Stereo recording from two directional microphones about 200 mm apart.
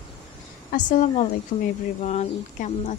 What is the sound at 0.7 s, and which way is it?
A woman's voice, 40° left (ahead or behind).